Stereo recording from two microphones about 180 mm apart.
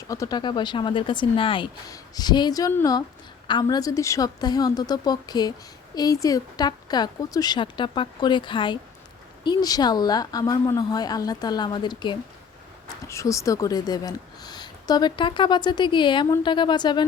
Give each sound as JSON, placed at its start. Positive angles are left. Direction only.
{"t": 0.1, "sound": "a woman's voice", "side_deg": 20}